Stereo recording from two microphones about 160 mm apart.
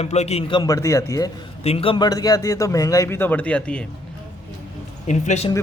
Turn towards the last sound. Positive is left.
turn(degrees=45)  # may be behind; listen again after turning